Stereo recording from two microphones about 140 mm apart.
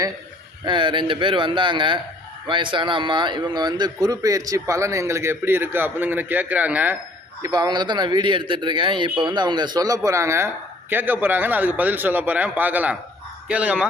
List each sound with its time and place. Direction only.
0.6 s a man's voice: 35° right (ahead or behind); by 6.9 s 10° right (ahead or behind)
7.4 s a man's voice: 30° right (ahead or behind); by 13.8 s 10° right (ahead or behind)